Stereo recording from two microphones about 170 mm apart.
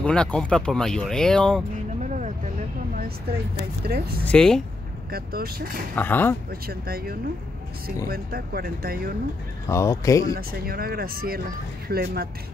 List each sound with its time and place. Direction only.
0.0 s speech: 5° left (ahead or behind)
2.0 s vehicle: 45° right (ahead or behind)
3.9 s speech: 70° right (ahead or behind)
4.3 s speech: 5° left (ahead or behind)
5.1 s speech: 65° right (ahead or behind)
5.9 s speech: 10° left (ahead or behind)
6.7 s speech: 65° right (ahead or behind)
9.7 s speech: 15° left (ahead or behind)
10.3 s speech: 65° right (ahead or behind)